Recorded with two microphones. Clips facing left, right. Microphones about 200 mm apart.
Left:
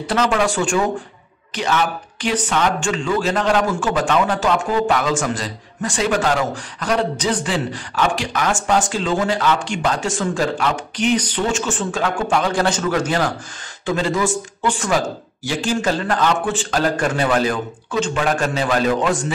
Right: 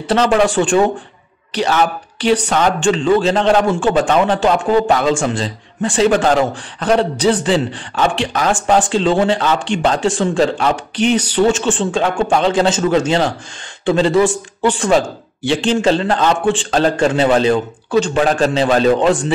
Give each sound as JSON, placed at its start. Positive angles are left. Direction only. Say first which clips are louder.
{"t": 0.1, "sound": "a man's voice", "louder": "right 5 dB", "side_deg": -30}
{"t": 17.9, "sound": "a man's voice", "louder": "right 6 dB", "side_deg": -35}